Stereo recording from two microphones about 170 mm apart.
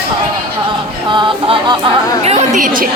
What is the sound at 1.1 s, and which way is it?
Music, 30° right (ahead or behind).